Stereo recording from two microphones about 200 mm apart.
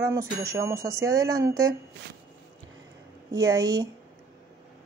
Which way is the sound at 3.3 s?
15° right (ahead or behind).